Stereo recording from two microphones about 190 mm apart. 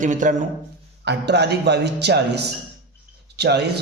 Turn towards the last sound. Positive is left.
turn(degrees=-60)  # may be behind; listen again after turning